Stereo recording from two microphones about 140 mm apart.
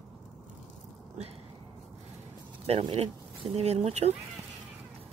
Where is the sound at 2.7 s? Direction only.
50° right (ahead or behind).